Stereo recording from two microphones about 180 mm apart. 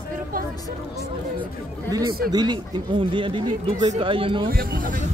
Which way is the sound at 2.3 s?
25° right (ahead or behind).